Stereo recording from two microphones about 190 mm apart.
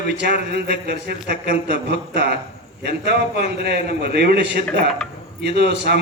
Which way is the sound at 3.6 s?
55° right (ahead or behind).